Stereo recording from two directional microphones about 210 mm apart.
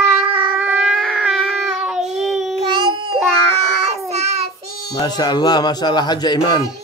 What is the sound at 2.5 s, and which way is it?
Babbling, 25° right (ahead or behind).